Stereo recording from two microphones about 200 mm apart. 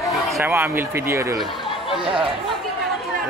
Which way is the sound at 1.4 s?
Centre (ahead or behind).